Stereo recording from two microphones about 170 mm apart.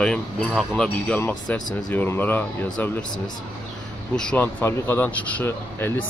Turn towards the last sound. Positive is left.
turn(degrees=10)  # may be behind; listen again after turning